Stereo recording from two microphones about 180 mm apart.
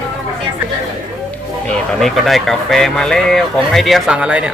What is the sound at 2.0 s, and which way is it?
Speech, centre (ahead or behind).